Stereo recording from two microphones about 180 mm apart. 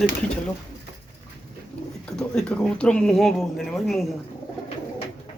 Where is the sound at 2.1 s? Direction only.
5° left (ahead or behind).